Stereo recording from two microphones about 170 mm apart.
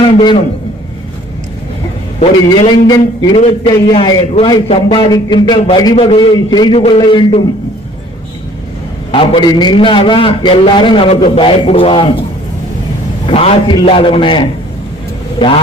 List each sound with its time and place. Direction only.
0.0 s a man's voice: 30° left (ahead or behind)
2.6 s a man's voice: 25° left (ahead or behind)
9.1 s a man's voice: 30° left (ahead or behind)
13.2 s a man's voice: 35° left (ahead or behind)